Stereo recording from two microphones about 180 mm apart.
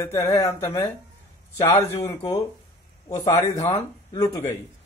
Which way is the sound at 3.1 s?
20° left (ahead or behind).